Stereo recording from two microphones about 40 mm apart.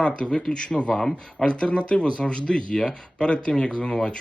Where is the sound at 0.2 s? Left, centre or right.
Left.